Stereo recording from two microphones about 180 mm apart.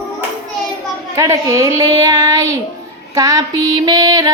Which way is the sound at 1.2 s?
15° right (ahead or behind).